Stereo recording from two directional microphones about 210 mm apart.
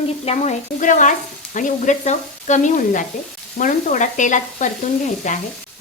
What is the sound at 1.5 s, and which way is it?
Sizzle, 40° left (ahead or behind).